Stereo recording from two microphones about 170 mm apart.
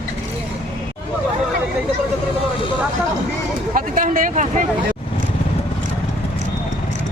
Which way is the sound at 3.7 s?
55° right (ahead or behind).